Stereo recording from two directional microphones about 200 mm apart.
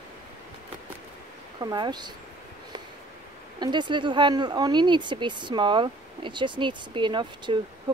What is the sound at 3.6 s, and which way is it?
Speech, 20° right (ahead or behind).